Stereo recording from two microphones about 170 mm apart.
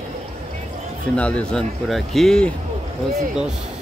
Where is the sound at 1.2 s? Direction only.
5° left (ahead or behind).